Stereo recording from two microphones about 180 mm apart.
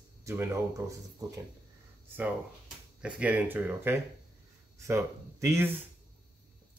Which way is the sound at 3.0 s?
5° right (ahead or behind).